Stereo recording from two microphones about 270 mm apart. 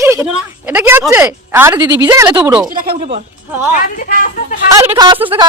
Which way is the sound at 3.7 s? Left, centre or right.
Left.